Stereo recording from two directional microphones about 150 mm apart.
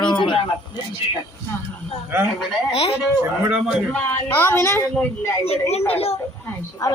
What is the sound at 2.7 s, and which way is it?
Speech, 45° left (ahead or behind).